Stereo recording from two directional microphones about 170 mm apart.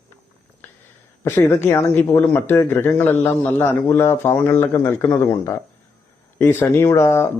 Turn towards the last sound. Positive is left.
turn(degrees=15)  # may be behind; listen again after turning